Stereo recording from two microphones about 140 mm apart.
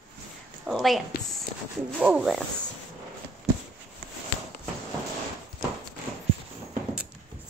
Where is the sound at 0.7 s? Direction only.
Centre (ahead or behind).